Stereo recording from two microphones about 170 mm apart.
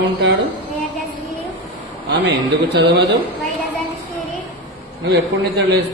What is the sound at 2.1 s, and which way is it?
Speech, 90° right.